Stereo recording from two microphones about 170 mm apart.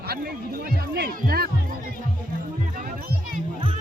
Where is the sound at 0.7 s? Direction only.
65° right (ahead or behind).